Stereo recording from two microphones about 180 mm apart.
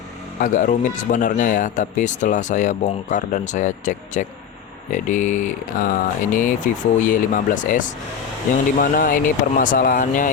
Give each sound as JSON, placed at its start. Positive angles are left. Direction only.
{"t": 0.3, "sound": "speech", "side_deg": 45}